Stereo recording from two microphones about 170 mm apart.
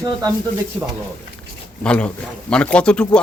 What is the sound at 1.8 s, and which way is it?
Speech, 5° left (ahead or behind).